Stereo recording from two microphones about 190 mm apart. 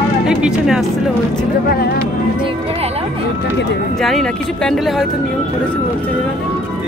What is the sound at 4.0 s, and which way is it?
Speech, centre (ahead or behind).